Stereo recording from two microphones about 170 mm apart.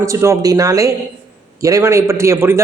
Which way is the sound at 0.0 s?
15° right (ahead or behind).